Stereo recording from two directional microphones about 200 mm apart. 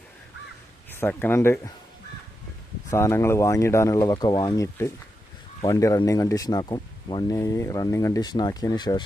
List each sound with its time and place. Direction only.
0.9 s speech: 10° left (ahead or behind)
2.9 s speech: 15° left (ahead or behind)